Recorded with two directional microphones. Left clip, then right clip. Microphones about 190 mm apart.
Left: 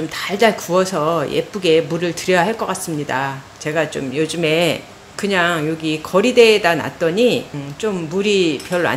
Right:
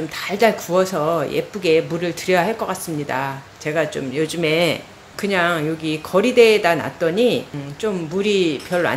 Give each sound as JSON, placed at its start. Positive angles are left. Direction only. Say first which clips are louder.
{"t": 0.2, "sound": "speech", "louder": "left 1 dB", "side_deg": 10}